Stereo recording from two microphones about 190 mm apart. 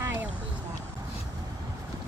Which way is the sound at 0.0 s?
10° right (ahead or behind).